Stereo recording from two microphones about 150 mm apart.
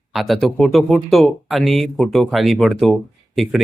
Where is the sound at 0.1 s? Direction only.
Centre (ahead or behind).